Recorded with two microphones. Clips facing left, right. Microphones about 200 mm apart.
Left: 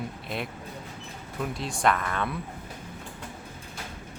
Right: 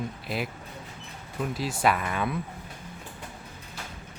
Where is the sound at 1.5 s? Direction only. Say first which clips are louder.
Even; 5° right (ahead or behind).